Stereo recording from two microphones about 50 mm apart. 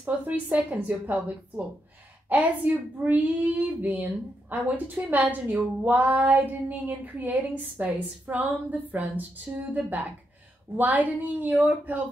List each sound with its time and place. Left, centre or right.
0.0 s a woman's voice: right
2.2 s a woman's voice: right